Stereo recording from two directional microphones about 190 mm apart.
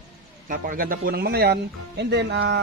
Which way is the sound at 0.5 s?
45° right (ahead or behind).